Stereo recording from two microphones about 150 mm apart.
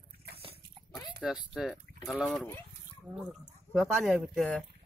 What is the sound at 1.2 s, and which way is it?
Speech, 5° right (ahead or behind).